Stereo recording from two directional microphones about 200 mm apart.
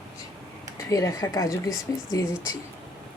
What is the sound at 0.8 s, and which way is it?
Speech, 15° left (ahead or behind).